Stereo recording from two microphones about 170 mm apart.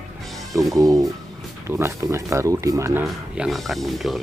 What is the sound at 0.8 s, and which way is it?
Speech, 20° right (ahead or behind).